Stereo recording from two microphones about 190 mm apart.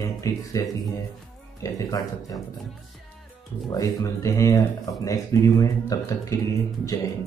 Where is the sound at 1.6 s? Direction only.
20° left (ahead or behind).